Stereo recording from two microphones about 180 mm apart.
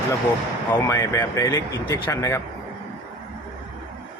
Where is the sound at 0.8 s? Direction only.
15° left (ahead or behind).